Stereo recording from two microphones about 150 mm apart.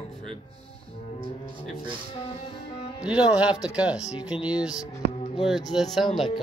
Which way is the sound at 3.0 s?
5° right (ahead or behind).